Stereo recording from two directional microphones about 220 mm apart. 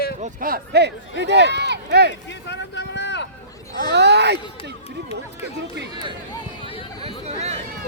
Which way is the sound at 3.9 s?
50° right (ahead or behind).